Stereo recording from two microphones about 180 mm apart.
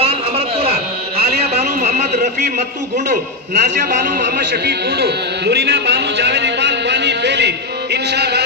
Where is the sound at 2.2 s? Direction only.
45° right (ahead or behind).